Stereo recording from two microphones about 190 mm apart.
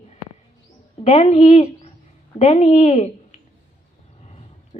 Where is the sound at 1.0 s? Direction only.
35° left (ahead or behind).